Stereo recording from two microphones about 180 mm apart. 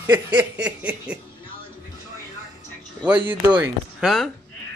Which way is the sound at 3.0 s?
10° right (ahead or behind).